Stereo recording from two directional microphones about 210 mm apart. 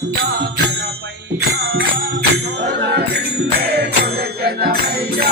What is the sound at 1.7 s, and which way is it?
Music, 65° right (ahead or behind).